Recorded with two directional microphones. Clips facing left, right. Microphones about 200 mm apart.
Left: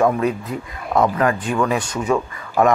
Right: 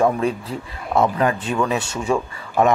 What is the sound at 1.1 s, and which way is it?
Speech, 25° right (ahead or behind).